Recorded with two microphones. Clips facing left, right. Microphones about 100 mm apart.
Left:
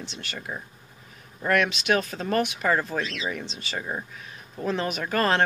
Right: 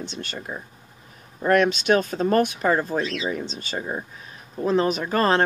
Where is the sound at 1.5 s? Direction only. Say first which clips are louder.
Right 5 dB; 35° right (ahead or behind).